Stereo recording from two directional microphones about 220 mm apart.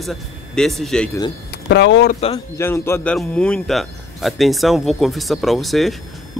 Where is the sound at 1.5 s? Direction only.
50° left (ahead or behind).